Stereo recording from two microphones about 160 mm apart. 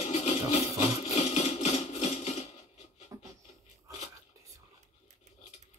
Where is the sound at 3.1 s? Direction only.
20° right (ahead or behind).